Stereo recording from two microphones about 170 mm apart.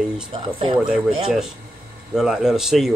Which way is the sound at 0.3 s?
30° right (ahead or behind).